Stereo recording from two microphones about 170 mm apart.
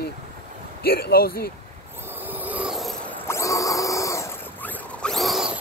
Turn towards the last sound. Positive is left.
turn(degrees=0)  # may be behind; listen again after turning